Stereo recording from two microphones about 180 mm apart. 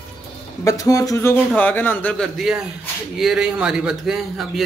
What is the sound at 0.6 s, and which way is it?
A man's voice, 20° left (ahead or behind).